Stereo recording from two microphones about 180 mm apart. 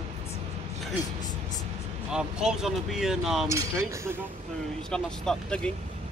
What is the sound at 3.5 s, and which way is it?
Speech, 15° right (ahead or behind).